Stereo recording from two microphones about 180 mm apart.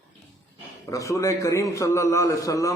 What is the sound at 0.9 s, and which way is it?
A man's voice, 20° left (ahead or behind).